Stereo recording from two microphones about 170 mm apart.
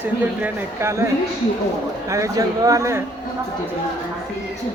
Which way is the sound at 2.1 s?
20° right (ahead or behind).